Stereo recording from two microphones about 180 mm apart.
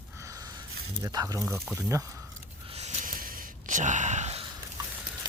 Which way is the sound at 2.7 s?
35° right (ahead or behind).